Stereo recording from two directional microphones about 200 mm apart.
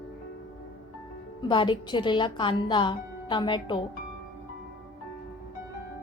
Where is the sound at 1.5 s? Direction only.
25° left (ahead or behind).